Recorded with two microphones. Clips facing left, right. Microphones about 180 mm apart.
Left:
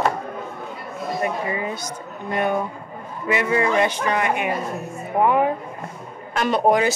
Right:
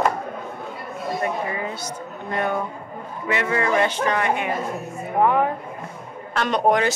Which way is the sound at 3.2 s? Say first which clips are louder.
Left 2 dB; 15° left (ahead or behind).